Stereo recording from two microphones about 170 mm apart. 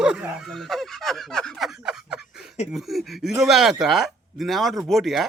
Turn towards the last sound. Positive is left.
turn(degrees=0)  # may be behind; listen again after turning